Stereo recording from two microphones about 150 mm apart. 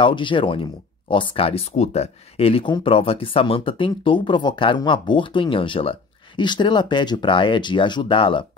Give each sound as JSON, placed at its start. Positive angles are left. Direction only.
{"t": 0.0, "sound": "speech", "side_deg": 35}